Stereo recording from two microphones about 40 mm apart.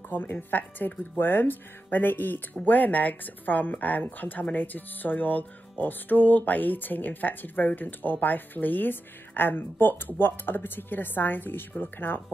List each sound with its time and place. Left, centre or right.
0.1 s speech: left
2.6 s speech: left